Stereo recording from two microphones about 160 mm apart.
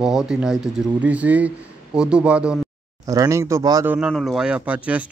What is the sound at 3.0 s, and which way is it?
Speech, 20° right (ahead or behind).